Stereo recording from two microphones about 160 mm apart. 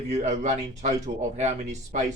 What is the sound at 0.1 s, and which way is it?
Speech, 45° right (ahead or behind).